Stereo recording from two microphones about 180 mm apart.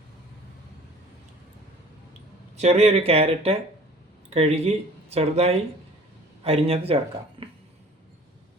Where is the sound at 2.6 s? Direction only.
35° right (ahead or behind).